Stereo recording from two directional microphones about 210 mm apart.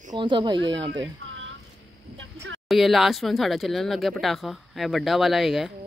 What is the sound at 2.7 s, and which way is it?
Speech, centre (ahead or behind).